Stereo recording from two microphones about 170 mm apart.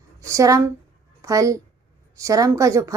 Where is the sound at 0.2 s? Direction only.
20° right (ahead or behind).